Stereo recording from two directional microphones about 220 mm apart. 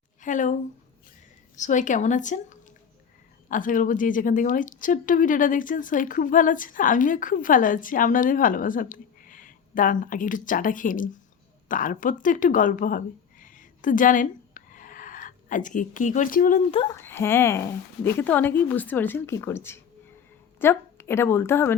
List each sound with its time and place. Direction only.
0.2 s speech: 35° left (ahead or behind)
1.5 s a woman's voice: 35° left (ahead or behind)
16.7 s speech: 20° left (ahead or behind)
17.0 s a woman's voice: 10° left (ahead or behind)